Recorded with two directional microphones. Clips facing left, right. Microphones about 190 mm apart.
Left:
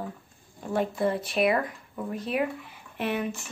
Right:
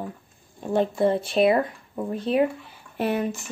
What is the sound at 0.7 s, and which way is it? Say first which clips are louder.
A woman's voice: right 5 dB; 30° right (ahead or behind).